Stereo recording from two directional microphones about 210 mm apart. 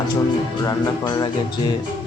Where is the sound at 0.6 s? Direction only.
20° left (ahead or behind).